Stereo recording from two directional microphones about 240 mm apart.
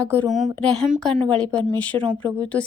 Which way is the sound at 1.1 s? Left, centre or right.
Centre.